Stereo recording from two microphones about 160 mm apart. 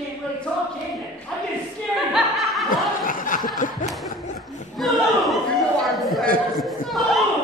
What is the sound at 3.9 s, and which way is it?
Snicker, centre (ahead or behind).